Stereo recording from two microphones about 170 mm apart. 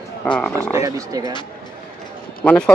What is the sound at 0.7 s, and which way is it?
Speech, 20° right (ahead or behind).